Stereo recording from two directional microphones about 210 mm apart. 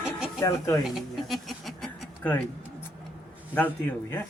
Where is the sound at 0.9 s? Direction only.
Centre (ahead or behind).